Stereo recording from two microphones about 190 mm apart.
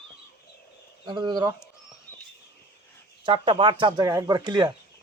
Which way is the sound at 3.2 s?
25° right (ahead or behind).